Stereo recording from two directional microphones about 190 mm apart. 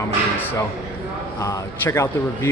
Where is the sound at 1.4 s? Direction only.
15° left (ahead or behind).